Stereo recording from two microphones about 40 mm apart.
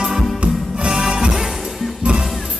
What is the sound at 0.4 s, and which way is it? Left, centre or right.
Music, right.